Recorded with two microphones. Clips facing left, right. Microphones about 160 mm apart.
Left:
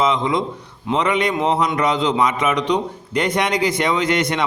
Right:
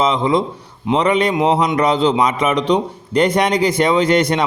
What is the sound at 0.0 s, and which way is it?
A man's voice, 30° right (ahead or behind).